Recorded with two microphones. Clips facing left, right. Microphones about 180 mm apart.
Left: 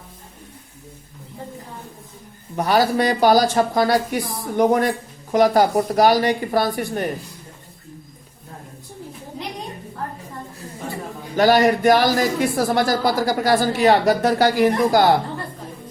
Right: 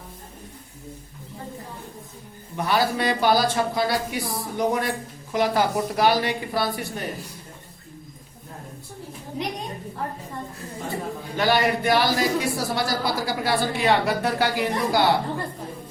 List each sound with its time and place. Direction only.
2.6 s speech: 40° left (ahead or behind)
11.3 s speech: 45° left (ahead or behind)